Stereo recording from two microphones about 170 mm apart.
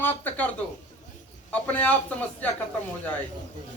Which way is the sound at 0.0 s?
10° left (ahead or behind).